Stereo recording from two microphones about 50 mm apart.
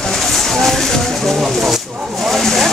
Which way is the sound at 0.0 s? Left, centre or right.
Centre.